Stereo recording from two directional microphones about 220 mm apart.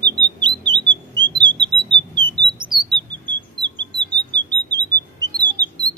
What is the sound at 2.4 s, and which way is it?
Chirp, 20° right (ahead or behind).